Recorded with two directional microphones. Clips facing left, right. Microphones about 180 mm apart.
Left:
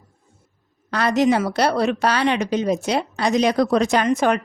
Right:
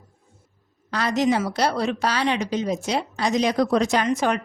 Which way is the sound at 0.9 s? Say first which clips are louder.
Left 4 dB; 60° left (ahead or behind).